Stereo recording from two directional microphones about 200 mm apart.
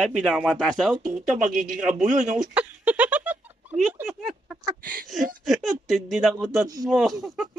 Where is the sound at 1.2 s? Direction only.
35° right (ahead or behind).